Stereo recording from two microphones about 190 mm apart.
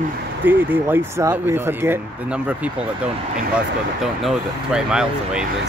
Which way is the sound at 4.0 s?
Centre (ahead or behind).